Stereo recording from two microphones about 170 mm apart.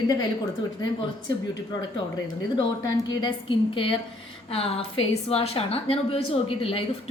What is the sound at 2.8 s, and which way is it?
Speech, 25° left (ahead or behind).